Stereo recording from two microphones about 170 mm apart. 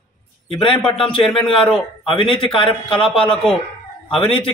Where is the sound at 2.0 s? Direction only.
30° left (ahead or behind).